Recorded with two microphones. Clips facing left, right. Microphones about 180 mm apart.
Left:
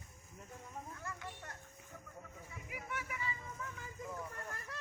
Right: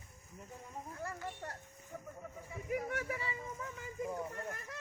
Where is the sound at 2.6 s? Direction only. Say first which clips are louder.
Right 9 dB; 40° right (ahead or behind).